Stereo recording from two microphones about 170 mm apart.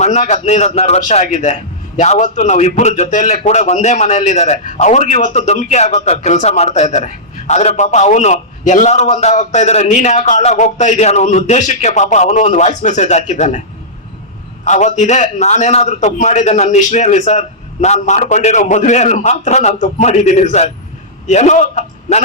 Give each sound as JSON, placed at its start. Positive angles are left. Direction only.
{"t": 0.0, "sound": "a man's voice", "side_deg": 40}
{"t": 14.6, "sound": "a man's voice", "side_deg": 45}